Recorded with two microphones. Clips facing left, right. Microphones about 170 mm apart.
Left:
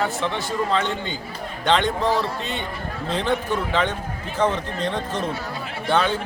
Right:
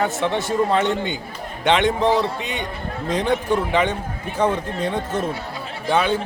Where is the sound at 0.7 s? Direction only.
60° right (ahead or behind).